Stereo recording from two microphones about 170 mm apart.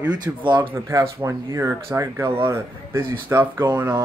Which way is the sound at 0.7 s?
15° right (ahead or behind).